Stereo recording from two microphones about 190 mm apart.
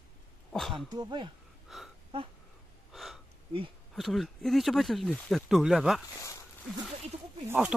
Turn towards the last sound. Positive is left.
turn(degrees=-5)  # may be behind; listen again after turning